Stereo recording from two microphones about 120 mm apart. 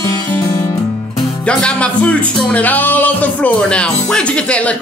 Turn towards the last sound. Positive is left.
turn(degrees=10)  # may be behind; listen again after turning